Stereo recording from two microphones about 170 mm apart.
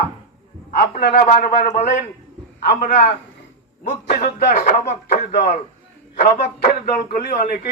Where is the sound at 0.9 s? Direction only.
55° left (ahead or behind).